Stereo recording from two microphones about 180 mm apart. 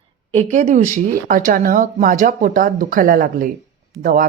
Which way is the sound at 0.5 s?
45° right (ahead or behind).